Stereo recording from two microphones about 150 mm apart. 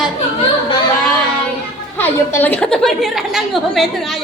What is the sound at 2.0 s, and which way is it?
A woman's voice, 15° left (ahead or behind).